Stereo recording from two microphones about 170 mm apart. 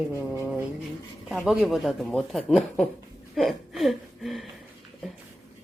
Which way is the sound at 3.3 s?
Centre (ahead or behind).